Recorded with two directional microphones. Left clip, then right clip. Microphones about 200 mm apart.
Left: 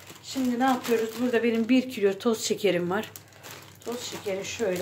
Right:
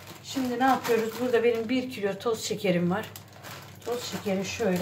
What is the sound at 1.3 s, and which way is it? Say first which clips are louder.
Speech: even; 50° left (ahead or behind).